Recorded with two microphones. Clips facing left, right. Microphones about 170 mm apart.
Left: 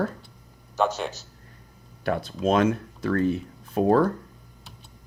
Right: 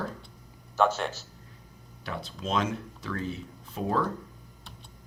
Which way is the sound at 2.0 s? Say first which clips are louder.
Left 10 dB; 55° left (ahead or behind).